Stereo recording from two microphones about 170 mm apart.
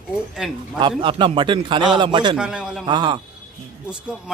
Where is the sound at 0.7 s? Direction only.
30° right (ahead or behind).